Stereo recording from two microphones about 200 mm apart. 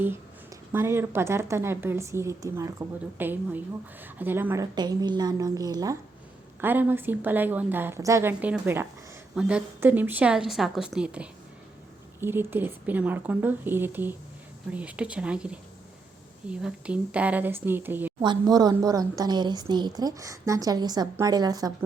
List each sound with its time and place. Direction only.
0.7 s a woman's voice: 10° right (ahead or behind)